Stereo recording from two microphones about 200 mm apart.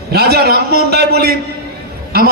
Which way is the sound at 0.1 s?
50° right (ahead or behind).